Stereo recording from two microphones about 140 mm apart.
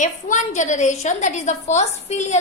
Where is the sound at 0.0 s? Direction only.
60° left (ahead or behind).